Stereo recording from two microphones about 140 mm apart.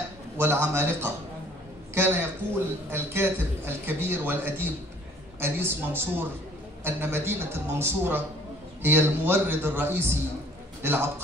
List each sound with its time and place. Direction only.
0.4 s a man's voice: 20° right (ahead or behind)